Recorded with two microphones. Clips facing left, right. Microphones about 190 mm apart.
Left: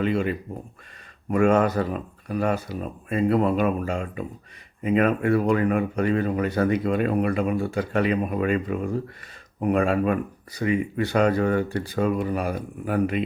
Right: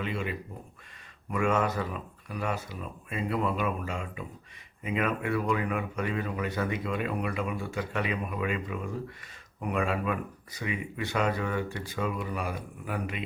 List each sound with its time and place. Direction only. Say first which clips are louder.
0.0 s speech: left 9 dB; 45° left (ahead or behind)
2.3 s speech: left 9 dB; 50° left (ahead or behind)